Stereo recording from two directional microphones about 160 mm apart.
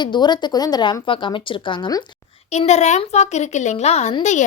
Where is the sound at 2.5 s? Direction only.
45° left (ahead or behind).